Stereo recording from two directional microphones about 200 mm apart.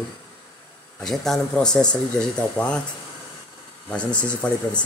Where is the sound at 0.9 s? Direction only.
Centre (ahead or behind).